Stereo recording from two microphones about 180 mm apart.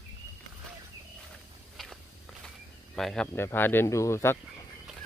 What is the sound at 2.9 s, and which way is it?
Speech, 5° left (ahead or behind).